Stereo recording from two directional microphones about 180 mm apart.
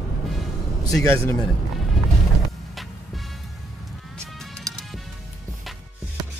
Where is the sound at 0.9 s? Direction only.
15° left (ahead or behind).